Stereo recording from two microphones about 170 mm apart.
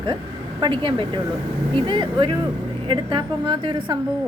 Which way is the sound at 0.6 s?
30° right (ahead or behind).